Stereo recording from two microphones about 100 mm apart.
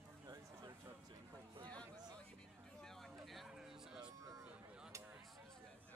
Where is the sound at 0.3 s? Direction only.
40° right (ahead or behind).